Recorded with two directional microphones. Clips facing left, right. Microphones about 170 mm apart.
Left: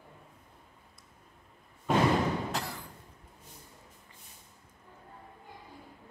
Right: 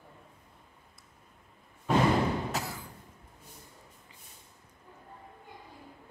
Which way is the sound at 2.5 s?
5° right (ahead or behind).